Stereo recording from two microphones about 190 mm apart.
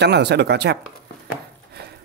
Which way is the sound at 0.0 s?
60° right (ahead or behind).